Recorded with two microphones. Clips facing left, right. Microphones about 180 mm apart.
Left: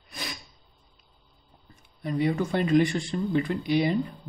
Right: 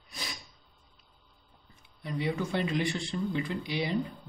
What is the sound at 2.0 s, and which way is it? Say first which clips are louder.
Speech: left 6 dB; 50° left (ahead or behind).